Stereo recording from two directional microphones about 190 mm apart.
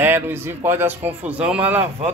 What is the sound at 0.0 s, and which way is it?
Speech, 10° right (ahead or behind).